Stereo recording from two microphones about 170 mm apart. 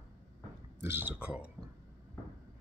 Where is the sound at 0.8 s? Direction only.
15° right (ahead or behind).